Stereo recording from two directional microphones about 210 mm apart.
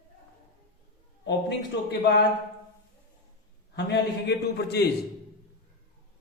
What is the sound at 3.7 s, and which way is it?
A man's voice, 50° left (ahead or behind).